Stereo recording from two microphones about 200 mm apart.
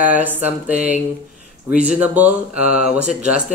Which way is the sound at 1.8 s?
5° right (ahead or behind).